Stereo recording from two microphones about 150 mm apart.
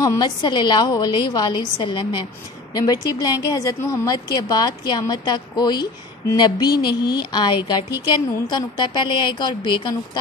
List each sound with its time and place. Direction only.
0.0 s a woman's voice: 25° left (ahead or behind)